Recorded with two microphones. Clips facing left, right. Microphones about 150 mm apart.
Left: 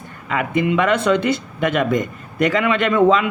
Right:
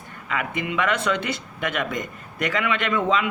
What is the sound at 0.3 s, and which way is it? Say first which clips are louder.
Speech: left 8 dB; 30° left (ahead or behind).